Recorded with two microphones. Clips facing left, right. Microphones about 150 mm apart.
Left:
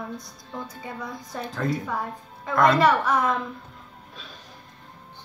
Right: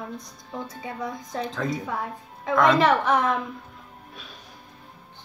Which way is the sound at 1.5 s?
Centre (ahead or behind).